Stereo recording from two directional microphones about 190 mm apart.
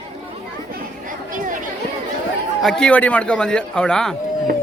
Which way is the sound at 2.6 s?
5° left (ahead or behind).